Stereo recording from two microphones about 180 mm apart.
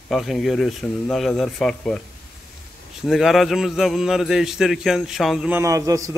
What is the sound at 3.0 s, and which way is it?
Speech, centre (ahead or behind).